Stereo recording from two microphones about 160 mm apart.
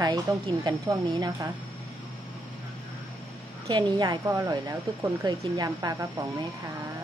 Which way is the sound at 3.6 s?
25° right (ahead or behind).